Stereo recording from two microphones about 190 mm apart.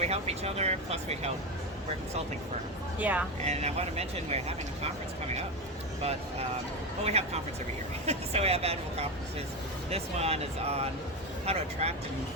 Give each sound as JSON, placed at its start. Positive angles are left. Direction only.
{"t": 0.0, "sound": "speech", "side_deg": -35}
{"t": 3.0, "sound": "speech", "side_deg": -10}
{"t": 3.4, "sound": "speech", "side_deg": -35}
{"t": 7.0, "sound": "speech", "side_deg": -35}